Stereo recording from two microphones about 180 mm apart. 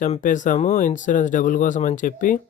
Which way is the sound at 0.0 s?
45° left (ahead or behind).